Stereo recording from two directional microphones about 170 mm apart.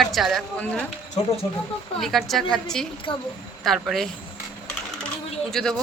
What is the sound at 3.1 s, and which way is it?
Speech, 30° left (ahead or behind).